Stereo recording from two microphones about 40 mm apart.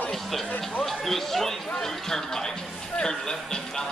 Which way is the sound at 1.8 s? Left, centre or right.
Centre.